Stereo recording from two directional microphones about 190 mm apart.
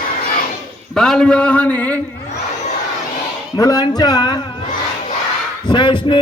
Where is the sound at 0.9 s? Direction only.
Centre (ahead or behind).